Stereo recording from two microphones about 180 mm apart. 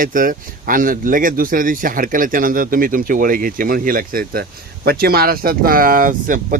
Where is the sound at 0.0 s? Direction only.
50° right (ahead or behind).